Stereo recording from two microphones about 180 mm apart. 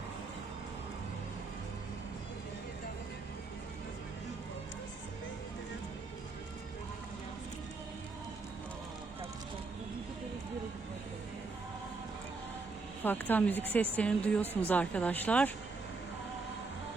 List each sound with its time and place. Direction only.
13.1 s a woman's voice: 10° left (ahead or behind)